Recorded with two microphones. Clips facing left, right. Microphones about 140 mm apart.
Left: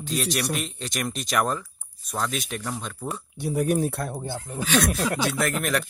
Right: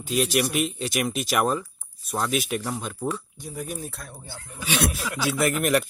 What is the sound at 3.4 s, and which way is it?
Speech, 70° left (ahead or behind).